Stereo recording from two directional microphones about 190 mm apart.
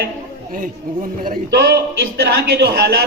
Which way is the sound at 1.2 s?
50° right (ahead or behind).